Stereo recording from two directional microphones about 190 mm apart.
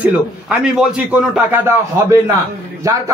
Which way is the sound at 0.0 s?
5° right (ahead or behind).